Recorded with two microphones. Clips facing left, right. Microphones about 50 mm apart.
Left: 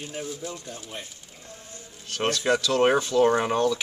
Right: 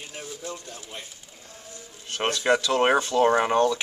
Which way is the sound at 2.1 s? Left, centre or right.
Right.